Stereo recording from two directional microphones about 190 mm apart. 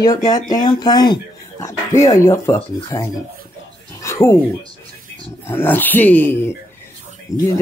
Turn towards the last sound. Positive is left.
turn(degrees=15)  # may be behind; listen again after turning